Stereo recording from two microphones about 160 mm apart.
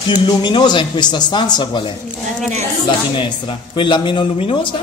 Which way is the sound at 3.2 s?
30° left (ahead or behind).